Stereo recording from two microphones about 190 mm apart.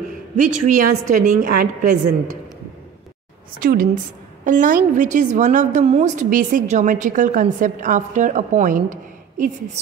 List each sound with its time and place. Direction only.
0.4 s a woman's voice: 40° right (ahead or behind)
3.5 s a woman's voice: 45° right (ahead or behind)